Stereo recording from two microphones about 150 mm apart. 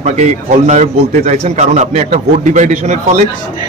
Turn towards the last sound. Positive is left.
turn(degrees=-50)  # may be behind; listen again after turning